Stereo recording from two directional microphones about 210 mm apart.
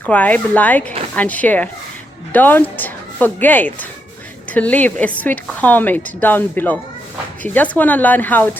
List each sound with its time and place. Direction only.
0.0 s a woman's voice: 5° left (ahead or behind)